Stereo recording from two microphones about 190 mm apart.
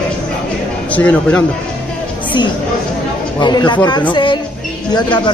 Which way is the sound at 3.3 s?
25° left (ahead or behind).